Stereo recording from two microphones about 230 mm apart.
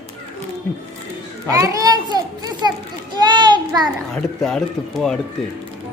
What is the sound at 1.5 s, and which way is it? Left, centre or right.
Speech, centre.